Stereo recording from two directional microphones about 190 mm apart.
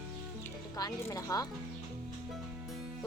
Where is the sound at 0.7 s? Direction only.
20° left (ahead or behind).